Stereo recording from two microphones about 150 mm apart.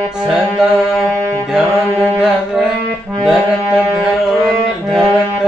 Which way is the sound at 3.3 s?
Centre (ahead or behind).